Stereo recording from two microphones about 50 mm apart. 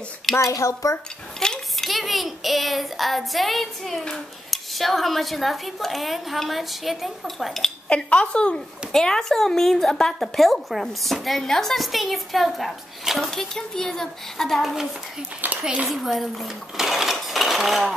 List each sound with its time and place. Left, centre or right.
0.4 s a woman's voice: left
1.4 s a sound: centre
1.9 s speech: centre
7.9 s speech: left
8.9 s a woman's voice: centre
15.6 s speech: right
15.9 s speech: centre